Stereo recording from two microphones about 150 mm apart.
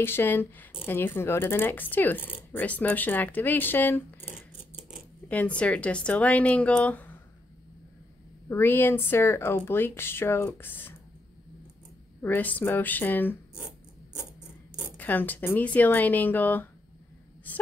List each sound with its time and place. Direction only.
0.0 s speech: 15° left (ahead or behind)
8.5 s speech: 15° left (ahead or behind)
12.2 s speech: 10° left (ahead or behind)
14.8 s speech: 10° left (ahead or behind)